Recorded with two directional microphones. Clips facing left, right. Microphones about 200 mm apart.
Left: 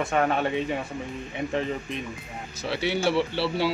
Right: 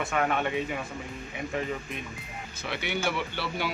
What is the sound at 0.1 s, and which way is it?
Speech, 35° left (ahead or behind).